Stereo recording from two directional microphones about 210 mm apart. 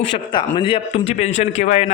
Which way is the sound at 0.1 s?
20° left (ahead or behind).